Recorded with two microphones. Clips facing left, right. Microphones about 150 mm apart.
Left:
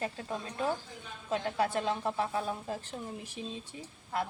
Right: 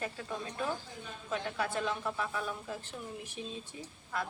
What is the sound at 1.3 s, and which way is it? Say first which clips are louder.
A woman's voice: left 4 dB; 35° left (ahead or behind).